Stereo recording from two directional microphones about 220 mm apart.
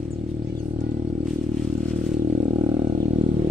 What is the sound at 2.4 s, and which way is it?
Vehicle, 20° right (ahead or behind).